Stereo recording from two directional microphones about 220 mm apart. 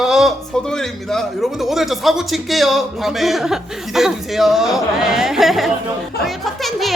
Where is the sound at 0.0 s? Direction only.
Centre (ahead or behind).